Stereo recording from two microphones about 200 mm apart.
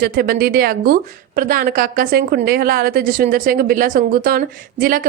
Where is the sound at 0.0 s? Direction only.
45° right (ahead or behind).